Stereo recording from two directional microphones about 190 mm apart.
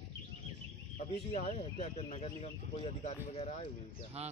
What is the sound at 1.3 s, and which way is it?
A man's voice, 30° left (ahead or behind).